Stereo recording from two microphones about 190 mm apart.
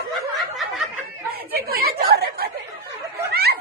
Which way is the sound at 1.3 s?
50° right (ahead or behind).